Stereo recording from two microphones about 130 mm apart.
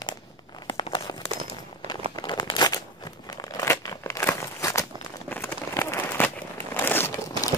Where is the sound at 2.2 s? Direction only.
35° left (ahead or behind).